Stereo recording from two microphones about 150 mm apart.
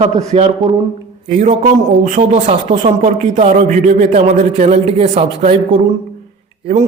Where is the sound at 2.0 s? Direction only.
60° right (ahead or behind).